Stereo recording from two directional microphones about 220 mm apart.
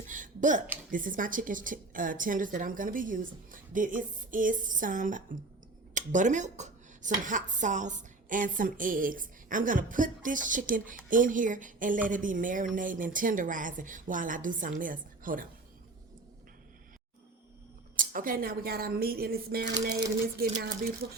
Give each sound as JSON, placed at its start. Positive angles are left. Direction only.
{"t": 0.1, "sound": "a woman's voice", "side_deg": -35}
{"t": 17.9, "sound": "speech", "side_deg": -40}